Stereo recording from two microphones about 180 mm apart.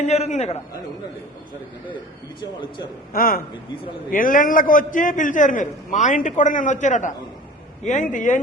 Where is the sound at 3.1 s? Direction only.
55° left (ahead or behind).